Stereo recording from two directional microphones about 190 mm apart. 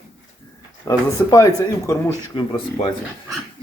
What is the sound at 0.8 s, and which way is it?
Speech, 15° left (ahead or behind).